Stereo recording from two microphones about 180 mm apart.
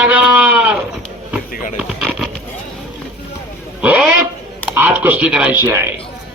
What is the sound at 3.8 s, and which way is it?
Speech, 10° right (ahead or behind).